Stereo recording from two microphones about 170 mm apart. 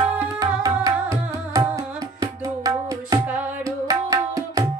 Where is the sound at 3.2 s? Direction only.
10° right (ahead or behind).